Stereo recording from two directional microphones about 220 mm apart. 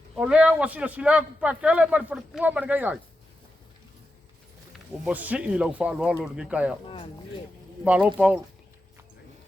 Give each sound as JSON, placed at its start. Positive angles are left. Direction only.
{"t": 0.2, "sound": "speech", "side_deg": -5}
{"t": 5.0, "sound": "speech", "side_deg": -5}
{"t": 6.8, "sound": "speech", "side_deg": 25}
{"t": 7.9, "sound": "speech", "side_deg": -5}